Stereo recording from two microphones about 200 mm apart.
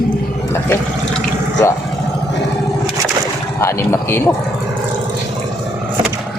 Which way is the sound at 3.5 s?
15° left (ahead or behind).